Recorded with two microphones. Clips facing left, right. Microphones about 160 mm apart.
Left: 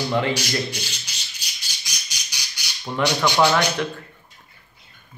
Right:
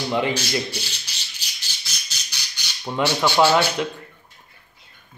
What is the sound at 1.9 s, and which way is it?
Squawk, 15° left (ahead or behind).